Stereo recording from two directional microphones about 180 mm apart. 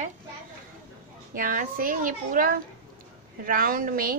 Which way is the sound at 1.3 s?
50° right (ahead or behind).